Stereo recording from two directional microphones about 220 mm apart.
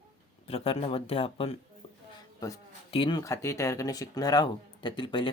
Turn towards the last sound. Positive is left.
turn(degrees=20)  # may be behind; listen again after turning